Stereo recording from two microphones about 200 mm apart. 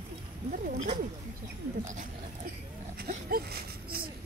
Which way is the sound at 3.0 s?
45° right (ahead or behind).